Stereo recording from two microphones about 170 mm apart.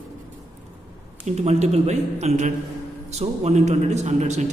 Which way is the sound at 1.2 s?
40° right (ahead or behind).